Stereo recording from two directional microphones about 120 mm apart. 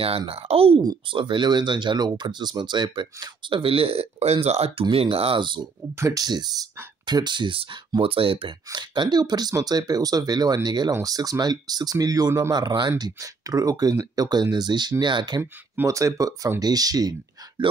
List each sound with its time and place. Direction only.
0.3 s speech: 55° right (ahead or behind)
0.8 s speech: 40° right (ahead or behind)
5.9 s speech: 30° right (ahead or behind); by 8.5 s 50° right (ahead or behind)
8.7 s speech: 40° right (ahead or behind)
15.7 s speech: 25° right (ahead or behind)